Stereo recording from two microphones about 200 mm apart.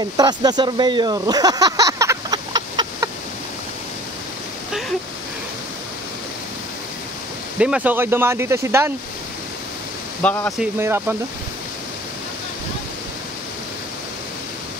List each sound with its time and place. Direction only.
0.0 s speech: 20° right (ahead or behind)
7.5 s speech: 5° right (ahead or behind)
10.2 s speech: 10° left (ahead or behind)
10.6 s speech: 10° right (ahead or behind)